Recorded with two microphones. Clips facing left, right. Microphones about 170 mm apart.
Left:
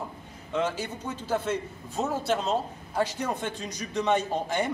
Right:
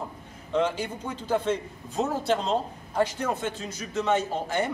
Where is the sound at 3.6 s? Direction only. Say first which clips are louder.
Left 2 dB; 15° left (ahead or behind).